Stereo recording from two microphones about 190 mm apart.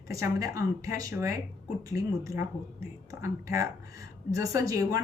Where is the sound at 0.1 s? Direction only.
15° right (ahead or behind).